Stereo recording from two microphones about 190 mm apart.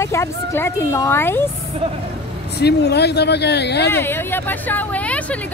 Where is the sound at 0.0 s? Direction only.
15° left (ahead or behind).